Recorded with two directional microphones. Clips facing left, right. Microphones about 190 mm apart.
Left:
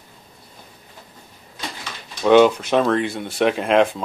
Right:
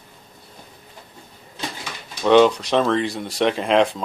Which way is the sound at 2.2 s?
5° left (ahead or behind).